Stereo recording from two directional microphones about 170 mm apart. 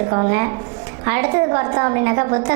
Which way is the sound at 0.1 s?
25° right (ahead or behind).